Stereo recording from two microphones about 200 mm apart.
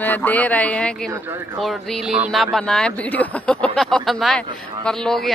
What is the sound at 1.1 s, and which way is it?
Speech, 10° right (ahead or behind).